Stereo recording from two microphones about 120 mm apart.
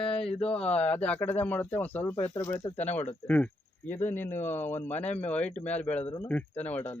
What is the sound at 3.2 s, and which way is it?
Speech, 15° left (ahead or behind).